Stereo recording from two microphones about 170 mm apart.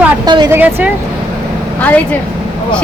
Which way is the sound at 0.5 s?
10° right (ahead or behind).